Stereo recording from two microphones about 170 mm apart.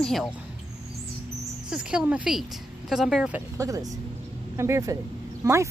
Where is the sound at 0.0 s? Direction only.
Centre (ahead or behind).